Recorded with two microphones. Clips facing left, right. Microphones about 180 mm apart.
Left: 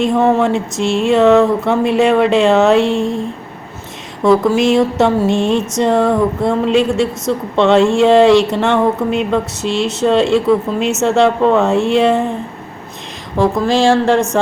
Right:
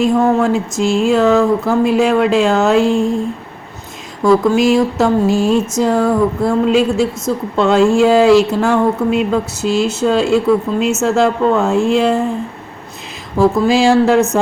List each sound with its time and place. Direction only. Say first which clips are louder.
0.0 s speech: even; centre (ahead or behind)
4.2 s speech: even; centre (ahead or behind)
13.4 s speech: right 1 dB; 5° right (ahead or behind)